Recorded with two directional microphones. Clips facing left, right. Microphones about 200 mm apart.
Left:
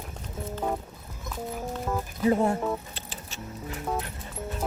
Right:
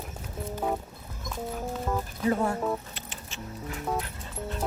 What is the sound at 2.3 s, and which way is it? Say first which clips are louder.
Speech: left 3 dB; 25° left (ahead or behind).